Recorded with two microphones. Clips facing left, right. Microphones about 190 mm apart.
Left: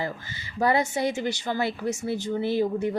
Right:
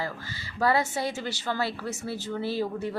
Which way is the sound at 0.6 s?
20° left (ahead or behind).